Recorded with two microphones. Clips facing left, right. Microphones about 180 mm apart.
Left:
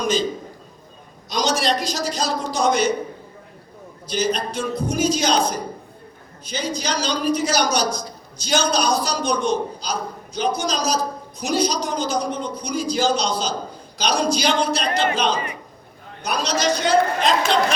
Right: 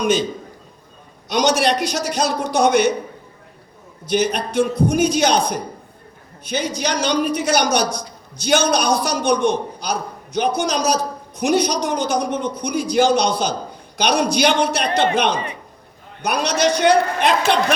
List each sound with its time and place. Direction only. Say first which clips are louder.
0.0 s a man's voice: right 3 dB; 60° right (ahead or behind)
1.3 s a woman's voice: right 4 dB; 65° right (ahead or behind)
4.0 s a woman's voice: right 3 dB; 60° right (ahead or behind)